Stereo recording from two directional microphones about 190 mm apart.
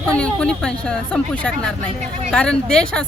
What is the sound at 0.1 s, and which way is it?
A woman's voice, 5° left (ahead or behind).